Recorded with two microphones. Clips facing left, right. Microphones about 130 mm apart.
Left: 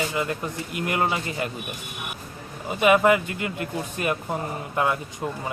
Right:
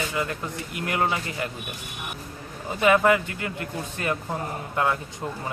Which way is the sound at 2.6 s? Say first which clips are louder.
Left 1 dB; 15° left (ahead or behind).